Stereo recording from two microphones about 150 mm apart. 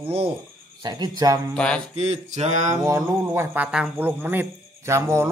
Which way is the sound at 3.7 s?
5° right (ahead or behind).